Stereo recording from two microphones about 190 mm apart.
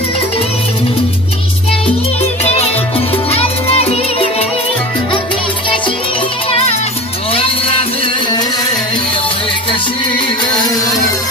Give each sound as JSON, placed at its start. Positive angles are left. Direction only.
{"t": 2.5, "sound": "music", "side_deg": 30}
{"t": 6.5, "sound": "music", "side_deg": 35}